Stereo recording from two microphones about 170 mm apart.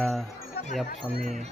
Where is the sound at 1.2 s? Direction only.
45° right (ahead or behind).